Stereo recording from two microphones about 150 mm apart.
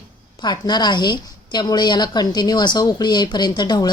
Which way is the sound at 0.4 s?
30° left (ahead or behind).